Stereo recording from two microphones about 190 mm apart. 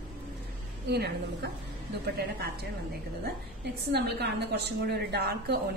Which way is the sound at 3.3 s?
55° right (ahead or behind).